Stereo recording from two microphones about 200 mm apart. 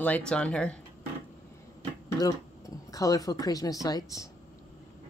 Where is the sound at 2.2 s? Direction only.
20° left (ahead or behind).